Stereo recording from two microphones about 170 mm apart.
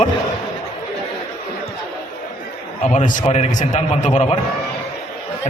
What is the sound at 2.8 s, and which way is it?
A man's voice, 45° left (ahead or behind).